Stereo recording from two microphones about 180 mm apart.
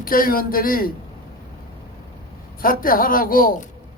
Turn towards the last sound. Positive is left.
turn(degrees=55)  # may be behind; listen again after turning